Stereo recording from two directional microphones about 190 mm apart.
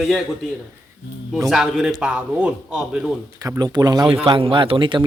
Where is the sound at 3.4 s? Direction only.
20° right (ahead or behind).